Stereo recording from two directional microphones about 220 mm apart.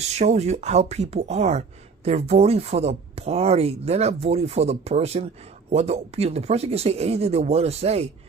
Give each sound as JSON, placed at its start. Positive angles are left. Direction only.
{"t": 0.2, "sound": "speech", "side_deg": -30}